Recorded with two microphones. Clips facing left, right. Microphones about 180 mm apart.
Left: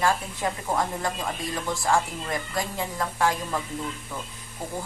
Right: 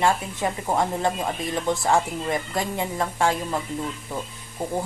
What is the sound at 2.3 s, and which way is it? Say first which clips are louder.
A woman's voice: right 4 dB; 25° right (ahead or behind).